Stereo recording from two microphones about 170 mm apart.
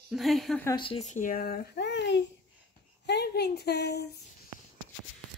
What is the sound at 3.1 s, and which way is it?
Speech, 75° left (ahead or behind).